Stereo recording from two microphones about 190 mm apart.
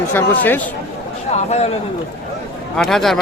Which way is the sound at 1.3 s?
35° left (ahead or behind).